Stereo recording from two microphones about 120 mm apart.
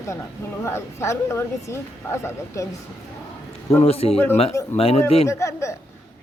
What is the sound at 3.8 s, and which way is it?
A man's voice, 55° left (ahead or behind).